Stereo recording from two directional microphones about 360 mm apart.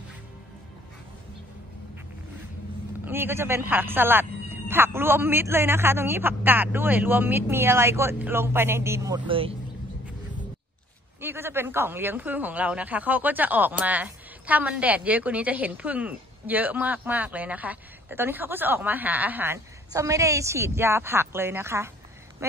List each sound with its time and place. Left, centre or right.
3.1 s speech: centre
11.1 s speech: centre